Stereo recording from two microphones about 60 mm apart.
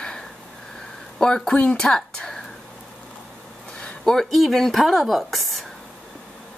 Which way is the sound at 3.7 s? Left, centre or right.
Centre.